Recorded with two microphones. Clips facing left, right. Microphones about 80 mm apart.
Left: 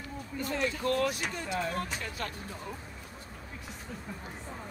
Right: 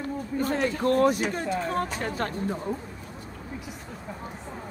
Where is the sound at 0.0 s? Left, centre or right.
Right.